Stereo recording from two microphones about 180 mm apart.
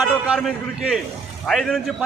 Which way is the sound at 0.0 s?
Centre (ahead or behind).